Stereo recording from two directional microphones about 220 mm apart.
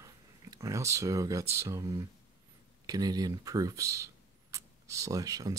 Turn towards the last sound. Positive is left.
turn(degrees=-15)  # may be behind; listen again after turning